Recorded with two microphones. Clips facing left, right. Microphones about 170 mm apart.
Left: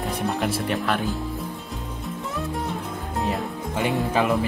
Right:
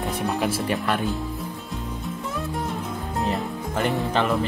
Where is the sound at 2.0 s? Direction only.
Centre (ahead or behind).